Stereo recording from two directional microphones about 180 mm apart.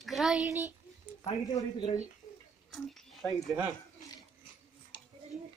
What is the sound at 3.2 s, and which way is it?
Speech, 5° left (ahead or behind).